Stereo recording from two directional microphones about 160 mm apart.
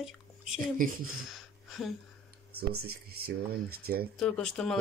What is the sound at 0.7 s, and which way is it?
Speech, 55° right (ahead or behind).